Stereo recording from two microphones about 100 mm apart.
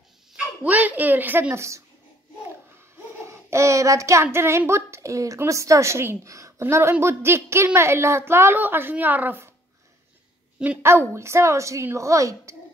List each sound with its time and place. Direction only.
0.7 s a woman's voice: 15° right (ahead or behind)
3.3 s child singing: 30° right (ahead or behind)
10.8 s child singing: 25° right (ahead or behind)